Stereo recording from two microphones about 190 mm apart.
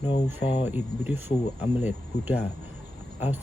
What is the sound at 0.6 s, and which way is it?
Speech, 10° right (ahead or behind).